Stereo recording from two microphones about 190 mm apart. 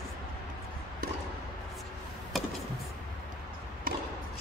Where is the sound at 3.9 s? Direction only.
50° right (ahead or behind).